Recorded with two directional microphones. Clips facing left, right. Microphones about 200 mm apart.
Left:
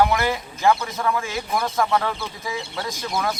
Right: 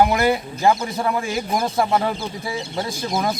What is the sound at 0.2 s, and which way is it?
Speech, 35° right (ahead or behind).